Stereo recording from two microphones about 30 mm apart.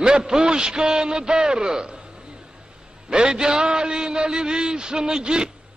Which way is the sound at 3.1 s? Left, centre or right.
Right.